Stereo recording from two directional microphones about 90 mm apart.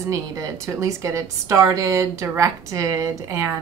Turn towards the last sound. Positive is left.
turn(degrees=-30)  # may be behind; listen again after turning